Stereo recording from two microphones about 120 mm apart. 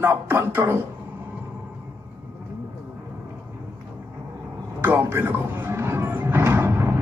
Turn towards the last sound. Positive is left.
turn(degrees=-20)  # may be behind; listen again after turning